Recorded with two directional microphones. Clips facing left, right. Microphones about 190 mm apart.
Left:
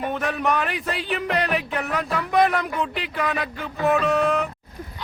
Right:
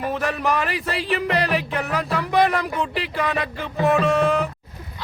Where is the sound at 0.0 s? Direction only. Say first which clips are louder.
Right 1 dB; centre (ahead or behind).